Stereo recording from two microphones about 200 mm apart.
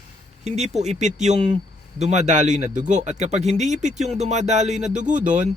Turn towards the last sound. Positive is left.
turn(degrees=-40)  # may be behind; listen again after turning